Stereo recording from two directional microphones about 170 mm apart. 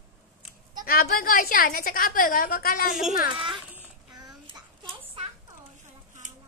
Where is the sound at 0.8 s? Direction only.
60° left (ahead or behind).